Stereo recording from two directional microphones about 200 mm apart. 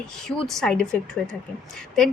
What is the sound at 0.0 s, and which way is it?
A woman's voice, centre (ahead or behind).